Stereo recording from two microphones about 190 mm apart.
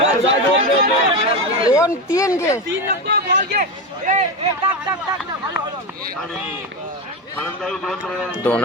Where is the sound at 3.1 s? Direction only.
50° right (ahead or behind); by 4.7 s 35° right (ahead or behind).